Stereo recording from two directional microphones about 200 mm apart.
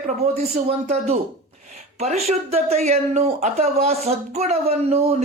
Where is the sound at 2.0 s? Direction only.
30° right (ahead or behind).